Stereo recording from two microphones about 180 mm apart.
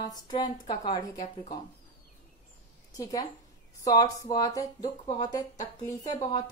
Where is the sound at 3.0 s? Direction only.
20° left (ahead or behind).